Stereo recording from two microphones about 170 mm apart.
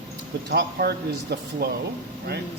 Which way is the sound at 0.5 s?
70° right (ahead or behind).